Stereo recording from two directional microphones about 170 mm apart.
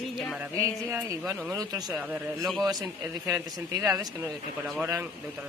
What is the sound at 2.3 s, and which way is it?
Speech, centre (ahead or behind).